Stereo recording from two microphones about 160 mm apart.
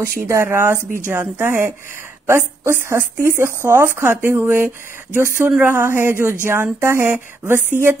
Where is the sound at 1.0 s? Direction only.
10° right (ahead or behind).